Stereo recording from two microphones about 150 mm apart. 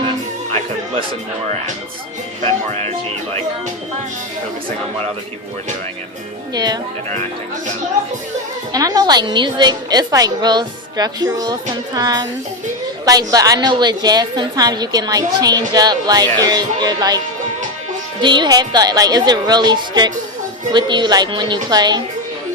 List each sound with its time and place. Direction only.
2.4 s speech: 45° right (ahead or behind)
6.5 s a woman's voice: 25° right (ahead or behind)
8.7 s a woman's voice: 25° right (ahead or behind)
18.2 s a woman's voice: 30° right (ahead or behind)